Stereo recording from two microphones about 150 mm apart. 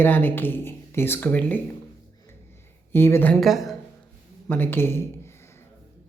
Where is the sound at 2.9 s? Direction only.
15° left (ahead or behind).